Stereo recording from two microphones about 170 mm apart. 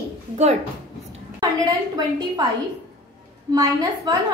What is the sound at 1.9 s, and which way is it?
Speech, 25° right (ahead or behind).